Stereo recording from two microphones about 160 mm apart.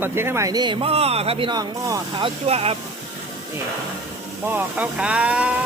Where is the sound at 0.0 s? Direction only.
15° right (ahead or behind); by 2.7 s 40° right (ahead or behind).